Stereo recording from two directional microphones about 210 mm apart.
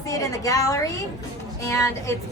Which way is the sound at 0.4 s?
15° left (ahead or behind).